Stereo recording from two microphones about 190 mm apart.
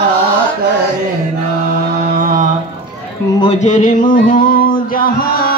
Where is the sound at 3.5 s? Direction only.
40° left (ahead or behind).